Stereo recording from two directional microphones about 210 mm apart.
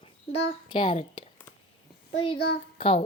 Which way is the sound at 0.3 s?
25° left (ahead or behind).